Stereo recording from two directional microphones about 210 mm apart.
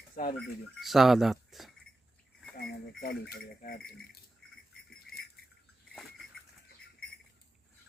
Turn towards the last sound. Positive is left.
turn(degrees=0)  # may be behind; listen again after turning